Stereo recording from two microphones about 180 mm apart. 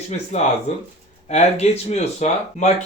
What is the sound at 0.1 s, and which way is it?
Speech, 40° left (ahead or behind).